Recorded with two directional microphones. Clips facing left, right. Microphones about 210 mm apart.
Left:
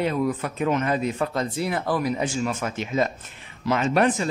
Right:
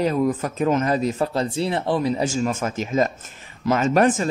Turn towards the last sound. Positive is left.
turn(degrees=-45)  # may be behind; listen again after turning